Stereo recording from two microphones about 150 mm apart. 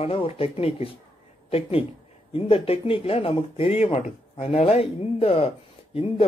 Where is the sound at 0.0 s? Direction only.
40° left (ahead or behind).